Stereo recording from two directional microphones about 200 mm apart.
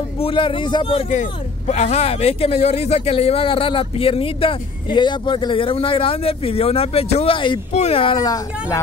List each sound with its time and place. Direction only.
0.2 s speech: 25° left (ahead or behind)